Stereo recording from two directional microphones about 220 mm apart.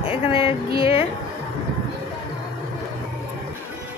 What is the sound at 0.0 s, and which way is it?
Music, 25° left (ahead or behind).